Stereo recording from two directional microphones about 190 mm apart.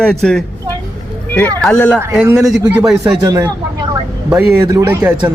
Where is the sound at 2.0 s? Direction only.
15° right (ahead or behind).